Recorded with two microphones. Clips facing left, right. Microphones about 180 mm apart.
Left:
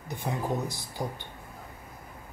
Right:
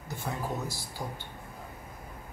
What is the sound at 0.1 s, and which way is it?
Speech, 15° left (ahead or behind).